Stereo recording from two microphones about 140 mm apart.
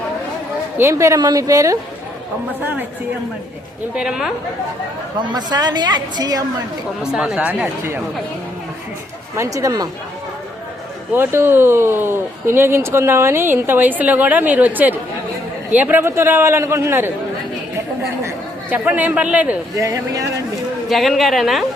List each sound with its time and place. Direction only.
0.8 s a woman's voice: 20° right (ahead or behind)
3.9 s a woman's voice: 5° right (ahead or behind)
5.3 s a woman's voice: 30° right (ahead or behind)
7.0 s speech: 5° right (ahead or behind)
9.3 s a woman's voice: 20° right (ahead or behind)
11.1 s speech: 15° right (ahead or behind)
18.2 s speech: 15° right (ahead or behind)
19.7 s a woman's voice: 25° right (ahead or behind)
20.9 s a woman's voice: centre (ahead or behind)